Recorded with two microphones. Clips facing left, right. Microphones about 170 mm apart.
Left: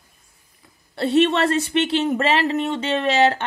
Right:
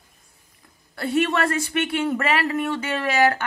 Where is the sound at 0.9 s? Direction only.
25° left (ahead or behind).